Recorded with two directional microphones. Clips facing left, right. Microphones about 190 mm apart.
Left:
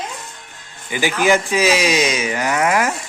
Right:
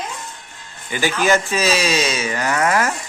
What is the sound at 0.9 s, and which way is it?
Speech, 15° left (ahead or behind).